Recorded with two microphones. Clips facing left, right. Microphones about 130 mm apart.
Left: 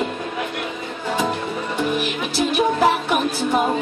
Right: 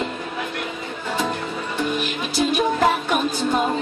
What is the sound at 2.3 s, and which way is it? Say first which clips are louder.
Music: left 1 dB; 5° left (ahead or behind).